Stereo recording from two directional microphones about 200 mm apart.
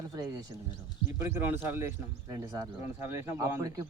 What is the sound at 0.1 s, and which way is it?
Speech, 15° right (ahead or behind).